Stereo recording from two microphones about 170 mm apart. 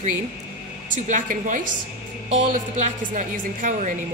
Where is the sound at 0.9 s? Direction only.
50° right (ahead or behind).